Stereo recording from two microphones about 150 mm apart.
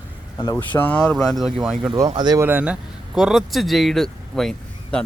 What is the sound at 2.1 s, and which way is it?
Speech, 30° right (ahead or behind).